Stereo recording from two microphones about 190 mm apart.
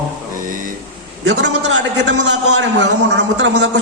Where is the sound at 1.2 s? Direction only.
70° right (ahead or behind).